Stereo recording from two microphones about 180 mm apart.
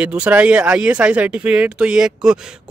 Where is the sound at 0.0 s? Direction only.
5° right (ahead or behind).